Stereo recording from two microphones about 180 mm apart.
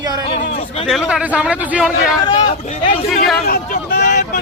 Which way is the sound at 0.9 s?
Centre (ahead or behind).